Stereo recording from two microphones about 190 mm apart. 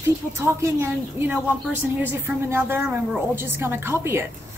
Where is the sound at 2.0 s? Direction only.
10° right (ahead or behind).